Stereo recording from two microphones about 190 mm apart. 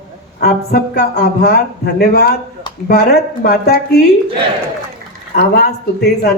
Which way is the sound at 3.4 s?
50° left (ahead or behind).